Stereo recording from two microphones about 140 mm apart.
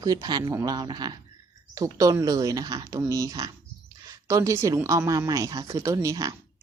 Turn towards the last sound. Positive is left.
turn(degrees=-25)  # may be behind; listen again after turning